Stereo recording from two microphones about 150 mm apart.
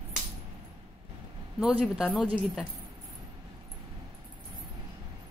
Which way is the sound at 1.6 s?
5° right (ahead or behind).